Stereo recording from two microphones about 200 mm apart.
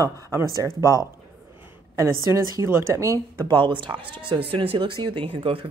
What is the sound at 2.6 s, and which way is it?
Speech, 15° right (ahead or behind).